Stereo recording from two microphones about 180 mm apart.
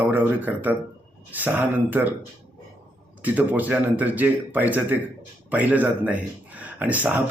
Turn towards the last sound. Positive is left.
turn(degrees=-10)  # may be behind; listen again after turning